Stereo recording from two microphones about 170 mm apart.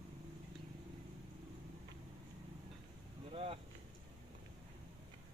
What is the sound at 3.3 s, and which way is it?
Vehicle, 35° right (ahead or behind).